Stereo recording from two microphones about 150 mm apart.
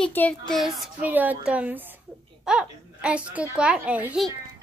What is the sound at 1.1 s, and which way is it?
A woman's voice, 10° right (ahead or behind).